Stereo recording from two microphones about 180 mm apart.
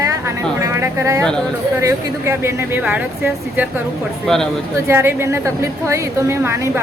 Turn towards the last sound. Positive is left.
turn(degrees=-15)  # may be behind; listen again after turning